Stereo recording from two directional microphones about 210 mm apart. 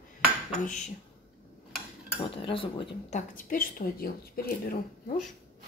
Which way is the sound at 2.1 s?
25° left (ahead or behind).